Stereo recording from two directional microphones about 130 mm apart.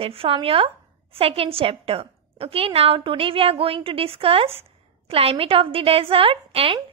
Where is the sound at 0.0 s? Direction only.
45° right (ahead or behind).